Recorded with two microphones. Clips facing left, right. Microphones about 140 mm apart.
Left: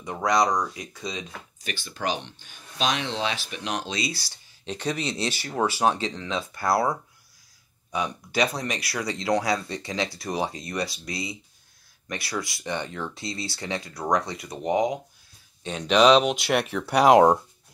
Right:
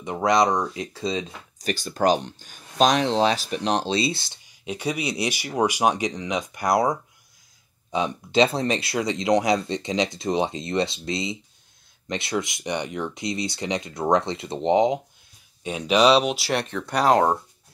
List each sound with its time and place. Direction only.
0.0 s speech: 20° right (ahead or behind)
4.6 s speech: 10° right (ahead or behind)
15.6 s speech: 10° right (ahead or behind); by 17.4 s 15° left (ahead or behind)